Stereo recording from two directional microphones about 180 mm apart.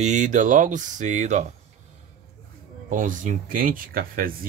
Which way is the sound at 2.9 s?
45° right (ahead or behind).